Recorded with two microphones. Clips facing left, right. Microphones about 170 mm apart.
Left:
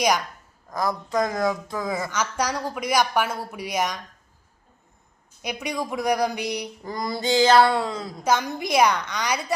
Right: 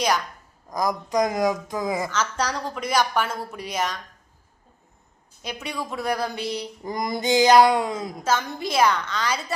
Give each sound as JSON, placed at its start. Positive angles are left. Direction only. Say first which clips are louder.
{"t": 0.7, "sound": "speech", "louder": "right 1 dB", "side_deg": -15}
{"t": 2.0, "sound": "a woman's voice", "louder": "even", "side_deg": 10}
{"t": 5.4, "sound": "a woman's voice", "louder": "left 3 dB", "side_deg": 15}
{"t": 6.8, "sound": "speech", "louder": "right 2 dB", "side_deg": -20}
{"t": 8.2, "sound": "a woman's voice", "louder": "left 3 dB", "side_deg": 15}